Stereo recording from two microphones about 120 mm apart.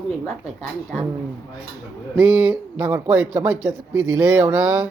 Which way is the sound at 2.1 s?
15° right (ahead or behind).